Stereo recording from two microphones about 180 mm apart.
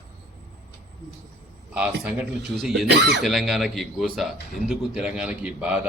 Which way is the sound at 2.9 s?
70° right (ahead or behind).